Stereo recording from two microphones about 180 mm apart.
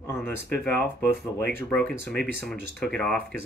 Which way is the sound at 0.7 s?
65° left (ahead or behind).